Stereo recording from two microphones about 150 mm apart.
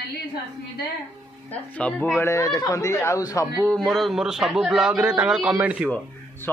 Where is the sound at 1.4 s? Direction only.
10° left (ahead or behind).